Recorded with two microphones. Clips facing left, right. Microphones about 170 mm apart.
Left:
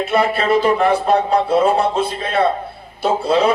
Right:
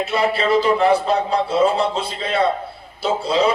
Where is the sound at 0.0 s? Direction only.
55° left (ahead or behind).